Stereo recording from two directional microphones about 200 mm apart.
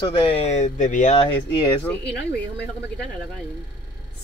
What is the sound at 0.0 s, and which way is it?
Speech, 25° left (ahead or behind).